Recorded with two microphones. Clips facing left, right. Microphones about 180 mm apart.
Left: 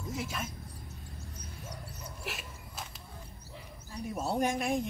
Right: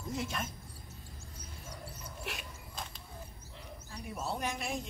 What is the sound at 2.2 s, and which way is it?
Dog, 5° left (ahead or behind).